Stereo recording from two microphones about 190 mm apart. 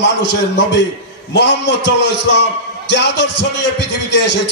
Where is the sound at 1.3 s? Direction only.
65° left (ahead or behind).